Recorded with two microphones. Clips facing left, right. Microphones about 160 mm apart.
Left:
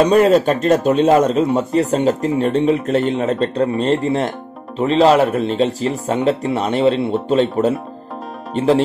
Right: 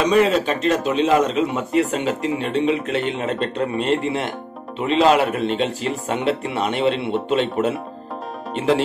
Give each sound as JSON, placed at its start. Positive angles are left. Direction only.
{"t": 0.0, "sound": "speech", "side_deg": 45}